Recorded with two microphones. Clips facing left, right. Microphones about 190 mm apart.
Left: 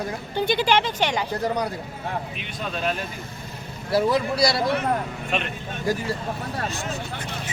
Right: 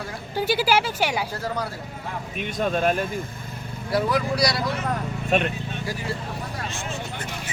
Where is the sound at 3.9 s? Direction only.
25° left (ahead or behind).